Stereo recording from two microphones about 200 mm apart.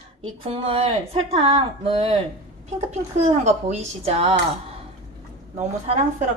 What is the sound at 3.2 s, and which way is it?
Speech, 35° right (ahead or behind).